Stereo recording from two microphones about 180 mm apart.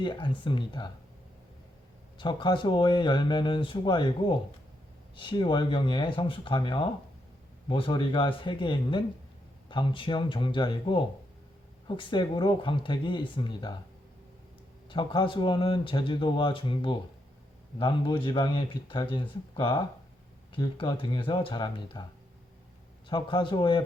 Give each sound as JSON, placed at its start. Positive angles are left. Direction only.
{"t": 0.0, "sound": "speech", "side_deg": 25}
{"t": 2.1, "sound": "speech", "side_deg": 25}
{"t": 14.8, "sound": "speech", "side_deg": 25}
{"t": 23.0, "sound": "speech", "side_deg": 25}